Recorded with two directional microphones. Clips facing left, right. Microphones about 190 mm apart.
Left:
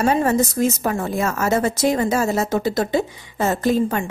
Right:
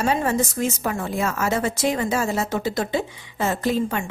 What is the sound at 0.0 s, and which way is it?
A woman's voice, 45° left (ahead or behind).